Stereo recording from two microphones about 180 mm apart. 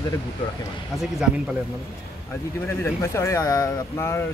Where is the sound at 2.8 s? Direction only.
15° left (ahead or behind).